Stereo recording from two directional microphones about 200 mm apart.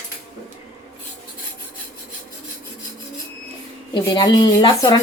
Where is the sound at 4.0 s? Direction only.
20° left (ahead or behind).